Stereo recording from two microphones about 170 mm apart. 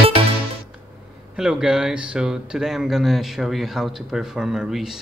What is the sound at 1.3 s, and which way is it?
Speech, 5° right (ahead or behind).